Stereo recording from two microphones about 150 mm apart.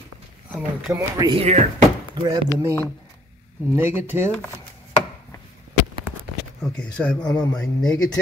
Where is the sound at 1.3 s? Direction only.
45° right (ahead or behind).